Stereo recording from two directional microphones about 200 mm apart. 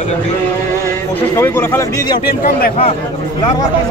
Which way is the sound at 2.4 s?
50° left (ahead or behind).